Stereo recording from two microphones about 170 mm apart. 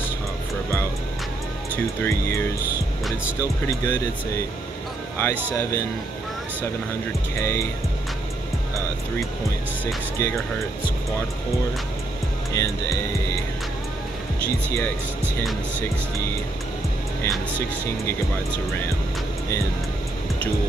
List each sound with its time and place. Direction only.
2.0 s speech: 15° left (ahead or behind)
5.1 s speech: 15° left (ahead or behind)
7.3 s speech: 15° left (ahead or behind)
10.1 s speech: 15° left (ahead or behind)
12.5 s speech: 20° left (ahead or behind)
17.2 s speech: 15° left (ahead or behind)